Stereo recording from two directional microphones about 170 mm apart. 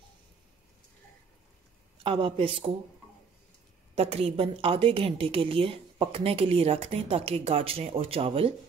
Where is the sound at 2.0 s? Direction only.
30° right (ahead or behind).